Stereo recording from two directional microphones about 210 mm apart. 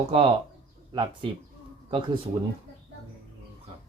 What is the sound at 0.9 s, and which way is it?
Speech, 20° right (ahead or behind).